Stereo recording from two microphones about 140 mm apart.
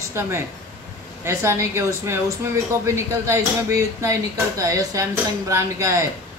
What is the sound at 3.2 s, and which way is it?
Speech, 20° right (ahead or behind).